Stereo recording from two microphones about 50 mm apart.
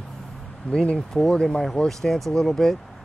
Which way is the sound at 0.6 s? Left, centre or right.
Centre.